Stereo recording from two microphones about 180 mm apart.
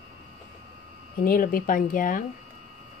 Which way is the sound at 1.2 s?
50° left (ahead or behind).